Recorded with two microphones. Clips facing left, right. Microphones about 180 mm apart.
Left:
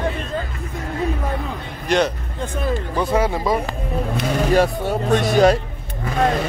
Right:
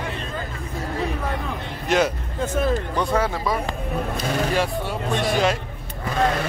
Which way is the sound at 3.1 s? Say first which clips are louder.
Left 4 dB; 10° left (ahead or behind).